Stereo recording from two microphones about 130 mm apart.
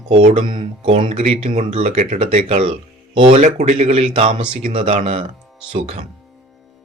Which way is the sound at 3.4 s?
60° right (ahead or behind).